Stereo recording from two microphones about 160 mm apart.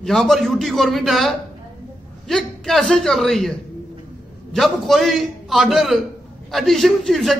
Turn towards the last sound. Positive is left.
turn(degrees=0)  # may be behind; listen again after turning